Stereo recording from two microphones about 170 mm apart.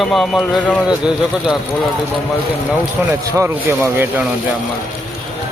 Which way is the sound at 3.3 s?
15° right (ahead or behind).